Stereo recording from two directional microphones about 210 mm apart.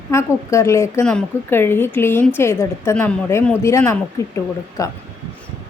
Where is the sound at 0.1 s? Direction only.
15° left (ahead or behind).